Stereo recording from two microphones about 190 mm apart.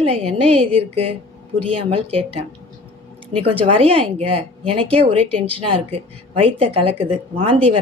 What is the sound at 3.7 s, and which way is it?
Speech, 30° right (ahead or behind).